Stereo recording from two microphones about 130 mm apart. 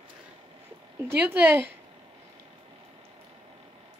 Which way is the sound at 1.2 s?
15° right (ahead or behind).